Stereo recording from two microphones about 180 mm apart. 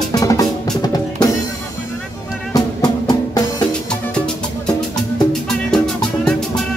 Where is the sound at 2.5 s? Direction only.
20° left (ahead or behind).